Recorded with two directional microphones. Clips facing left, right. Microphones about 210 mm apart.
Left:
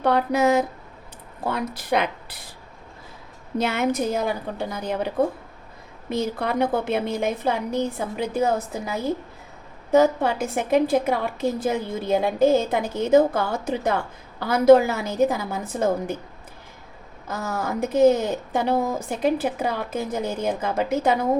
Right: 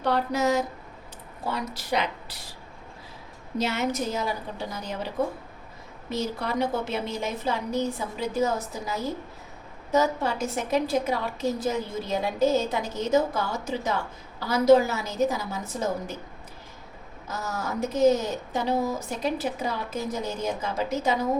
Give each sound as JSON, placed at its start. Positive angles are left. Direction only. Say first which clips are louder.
{"t": 0.0, "sound": "a woman's voice", "louder": "left 5 dB", "side_deg": 55}
{"t": 3.6, "sound": "a woman's voice", "louder": "left 4 dB", "side_deg": 55}
{"t": 17.2, "sound": "a woman's voice", "louder": "left 4 dB", "side_deg": 55}